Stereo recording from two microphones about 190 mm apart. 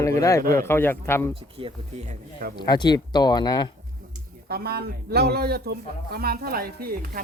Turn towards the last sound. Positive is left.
turn(degrees=-50)  # may be behind; listen again after turning